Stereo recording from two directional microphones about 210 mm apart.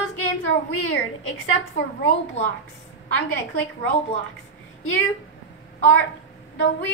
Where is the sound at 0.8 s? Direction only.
60° left (ahead or behind).